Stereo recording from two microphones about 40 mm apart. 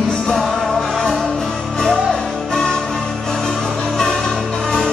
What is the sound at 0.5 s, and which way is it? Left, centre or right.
Music, centre.